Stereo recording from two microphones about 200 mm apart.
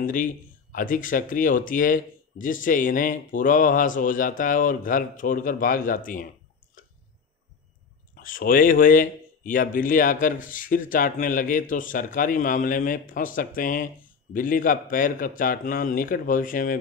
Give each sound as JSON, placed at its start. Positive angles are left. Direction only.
{"t": 0.0, "sound": "speech", "side_deg": 40}
{"t": 8.2, "sound": "speech", "side_deg": 45}